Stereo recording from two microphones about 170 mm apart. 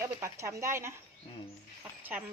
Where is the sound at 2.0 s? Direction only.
10° right (ahead or behind).